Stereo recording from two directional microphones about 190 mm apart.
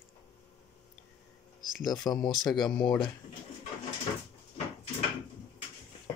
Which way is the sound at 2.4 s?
Centre (ahead or behind).